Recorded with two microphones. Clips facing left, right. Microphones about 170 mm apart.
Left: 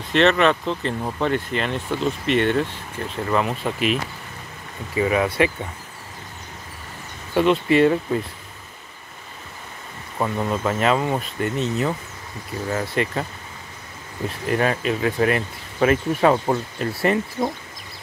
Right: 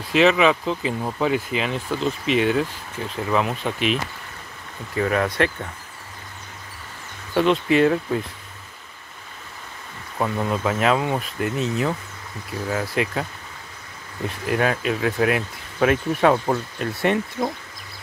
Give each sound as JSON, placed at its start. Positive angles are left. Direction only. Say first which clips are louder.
{"t": 0.0, "sound": "speech", "louder": "even", "side_deg": 0}
{"t": 7.3, "sound": "speech", "louder": "left 1 dB", "side_deg": 0}
{"t": 10.1, "sound": "speech", "louder": "even", "side_deg": 0}